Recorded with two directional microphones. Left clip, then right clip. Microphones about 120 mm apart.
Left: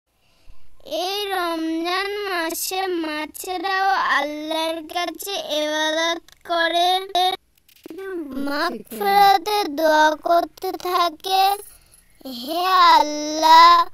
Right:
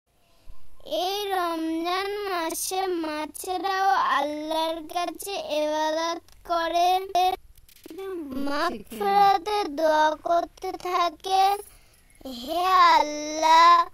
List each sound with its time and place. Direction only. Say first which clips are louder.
0.8 s child singing: left 3 dB; 25° left (ahead or behind)
8.0 s a child's voice: left 4 dB; 35° left (ahead or behind)
8.3 s a child's voice: left 3 dB; 10° left (ahead or behind)
8.8 s child singing: left 5 dB; 20° left (ahead or behind)